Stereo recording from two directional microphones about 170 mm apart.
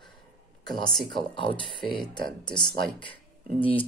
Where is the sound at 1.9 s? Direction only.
Centre (ahead or behind).